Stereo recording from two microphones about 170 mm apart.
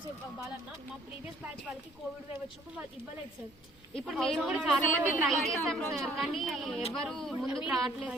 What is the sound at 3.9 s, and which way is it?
A woman's voice, centre (ahead or behind).